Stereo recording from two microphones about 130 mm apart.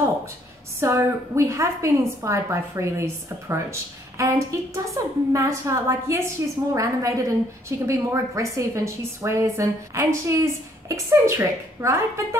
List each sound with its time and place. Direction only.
0.7 s a woman's voice: 20° right (ahead or behind)